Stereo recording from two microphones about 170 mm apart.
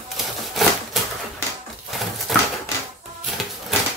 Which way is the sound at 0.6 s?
Centre (ahead or behind).